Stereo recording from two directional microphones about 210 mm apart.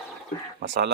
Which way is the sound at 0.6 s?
55° right (ahead or behind).